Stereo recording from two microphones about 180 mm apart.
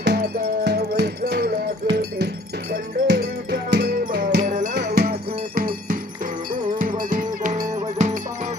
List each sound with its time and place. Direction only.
0.0 s music: 65° right (ahead or behind)
4.7 s cowbell: 60° right (ahead or behind)
6.8 s music: 50° right (ahead or behind)